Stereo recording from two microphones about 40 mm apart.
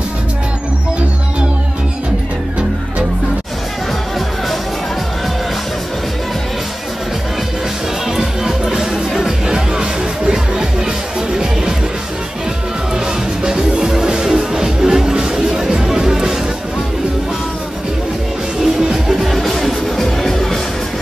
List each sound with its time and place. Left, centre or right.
8.2 s music: centre
13.4 s music: centre
18.6 s music: centre